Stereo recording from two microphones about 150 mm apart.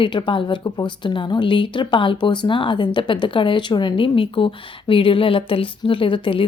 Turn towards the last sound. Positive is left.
turn(degrees=35)  # may be behind; listen again after turning